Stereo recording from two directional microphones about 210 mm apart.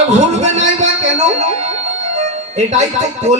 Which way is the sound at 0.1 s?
30° right (ahead or behind).